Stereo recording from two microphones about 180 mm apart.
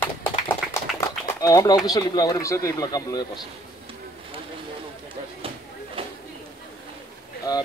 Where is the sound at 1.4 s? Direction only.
20° left (ahead or behind).